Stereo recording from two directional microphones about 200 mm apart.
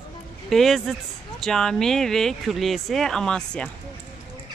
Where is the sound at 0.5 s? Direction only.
Centre (ahead or behind).